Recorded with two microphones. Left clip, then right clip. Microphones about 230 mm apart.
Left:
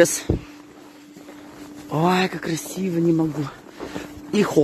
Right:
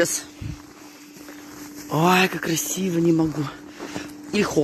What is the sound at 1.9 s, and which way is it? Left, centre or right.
Speech, centre.